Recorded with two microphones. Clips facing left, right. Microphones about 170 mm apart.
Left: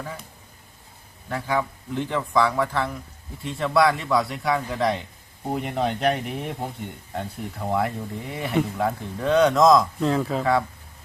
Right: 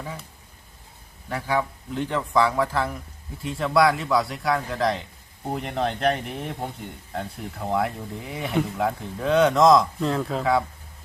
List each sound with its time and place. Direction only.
1.3 s speech: centre (ahead or behind)